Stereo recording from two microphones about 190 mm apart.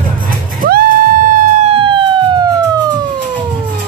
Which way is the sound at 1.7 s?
25° right (ahead or behind).